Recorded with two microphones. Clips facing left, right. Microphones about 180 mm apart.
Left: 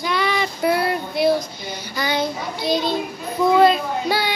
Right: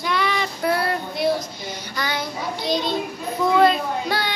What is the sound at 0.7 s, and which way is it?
Child singing, 15° left (ahead or behind).